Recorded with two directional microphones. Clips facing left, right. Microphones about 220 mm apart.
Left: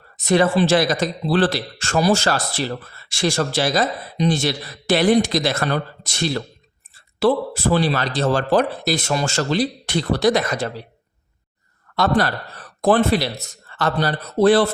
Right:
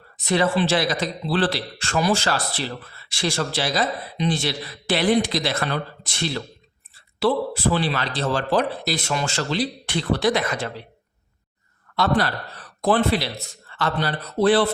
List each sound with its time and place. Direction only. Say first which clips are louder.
0.3 s speech: left 4 dB; 45° left (ahead or behind)
11.9 s speech: left 3 dB; 45° left (ahead or behind)